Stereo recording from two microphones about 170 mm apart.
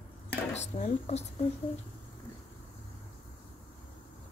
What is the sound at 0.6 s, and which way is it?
Speech, 40° left (ahead or behind).